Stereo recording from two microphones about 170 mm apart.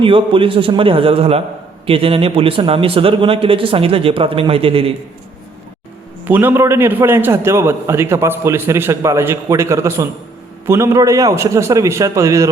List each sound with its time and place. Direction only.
0.0 s speech: 30° right (ahead or behind)
6.2 s a man's voice: 10° right (ahead or behind)